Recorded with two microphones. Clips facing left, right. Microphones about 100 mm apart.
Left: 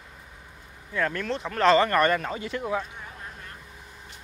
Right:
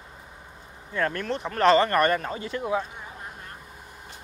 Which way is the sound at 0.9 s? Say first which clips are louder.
Right 1 dB; 5° right (ahead or behind).